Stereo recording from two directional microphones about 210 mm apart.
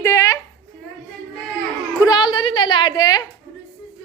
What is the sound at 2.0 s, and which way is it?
A woman's voice, 20° left (ahead or behind).